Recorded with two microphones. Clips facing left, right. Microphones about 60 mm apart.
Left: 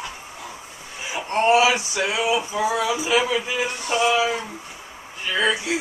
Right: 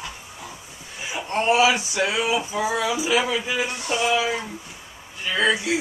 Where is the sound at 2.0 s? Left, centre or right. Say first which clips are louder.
Left 2 dB; centre.